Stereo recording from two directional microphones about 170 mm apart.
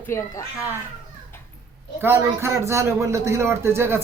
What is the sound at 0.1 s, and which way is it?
Speech, 15° left (ahead or behind).